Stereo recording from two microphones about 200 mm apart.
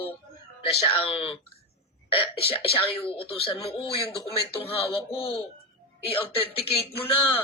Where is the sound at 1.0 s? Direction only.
30° left (ahead or behind).